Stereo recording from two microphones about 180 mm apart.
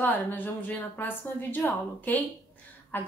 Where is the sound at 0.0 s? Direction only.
10° left (ahead or behind).